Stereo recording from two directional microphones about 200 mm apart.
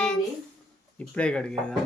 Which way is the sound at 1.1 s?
5° left (ahead or behind).